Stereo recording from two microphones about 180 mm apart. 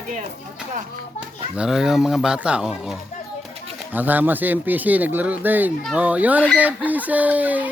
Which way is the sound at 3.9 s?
10° right (ahead or behind).